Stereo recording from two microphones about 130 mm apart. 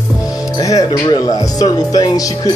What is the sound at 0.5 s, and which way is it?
Speech, 30° left (ahead or behind).